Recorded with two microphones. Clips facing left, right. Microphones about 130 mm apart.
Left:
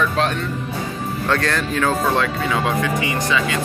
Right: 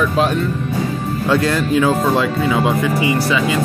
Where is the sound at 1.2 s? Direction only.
10° right (ahead or behind).